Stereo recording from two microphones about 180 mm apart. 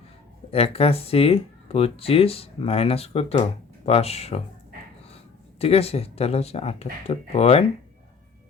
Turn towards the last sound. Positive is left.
turn(degrees=35)  # may be behind; listen again after turning